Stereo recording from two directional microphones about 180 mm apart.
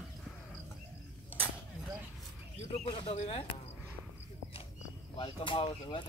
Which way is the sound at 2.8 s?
25° left (ahead or behind).